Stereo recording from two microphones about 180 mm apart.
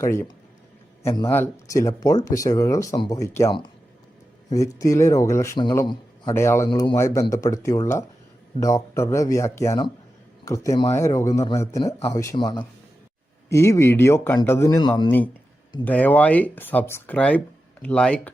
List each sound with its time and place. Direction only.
0.0 s a man's voice: 15° left (ahead or behind)
6.7 s a man's voice: 25° left (ahead or behind)
15.8 s speech: 10° left (ahead or behind)